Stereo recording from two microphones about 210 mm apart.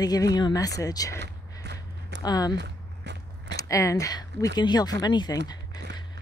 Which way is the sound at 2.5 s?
55° right (ahead or behind).